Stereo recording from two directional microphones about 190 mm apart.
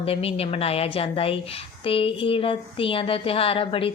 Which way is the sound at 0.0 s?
30° left (ahead or behind).